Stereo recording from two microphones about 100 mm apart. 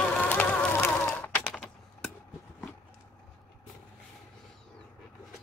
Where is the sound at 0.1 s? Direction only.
15° left (ahead or behind).